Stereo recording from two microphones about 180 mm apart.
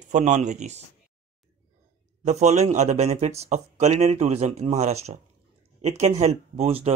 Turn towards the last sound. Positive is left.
turn(degrees=-35)  # may be behind; listen again after turning